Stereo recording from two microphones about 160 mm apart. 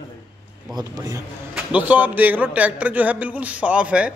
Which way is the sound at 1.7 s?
10° right (ahead or behind).